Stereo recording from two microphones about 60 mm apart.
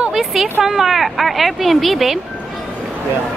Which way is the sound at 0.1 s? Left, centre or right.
Centre.